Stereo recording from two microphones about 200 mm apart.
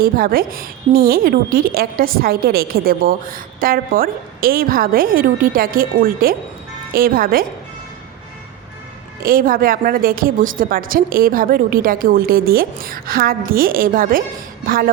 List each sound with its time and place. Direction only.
0.0 s a woman's voice: 50° right (ahead or behind)
9.2 s a woman's voice: 45° right (ahead or behind)